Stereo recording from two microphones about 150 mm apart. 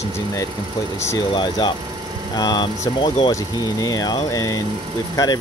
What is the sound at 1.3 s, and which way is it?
Speech, 30° left (ahead or behind).